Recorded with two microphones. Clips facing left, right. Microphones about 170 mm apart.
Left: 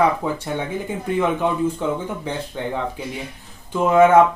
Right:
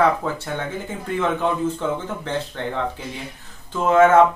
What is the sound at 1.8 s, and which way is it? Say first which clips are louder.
Speech: left 1 dB; 15° left (ahead or behind).